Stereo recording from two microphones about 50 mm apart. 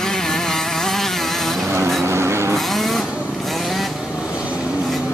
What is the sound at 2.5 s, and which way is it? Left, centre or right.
Vehicle, centre.